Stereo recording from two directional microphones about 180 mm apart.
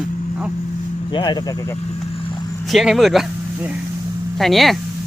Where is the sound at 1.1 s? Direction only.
25° left (ahead or behind).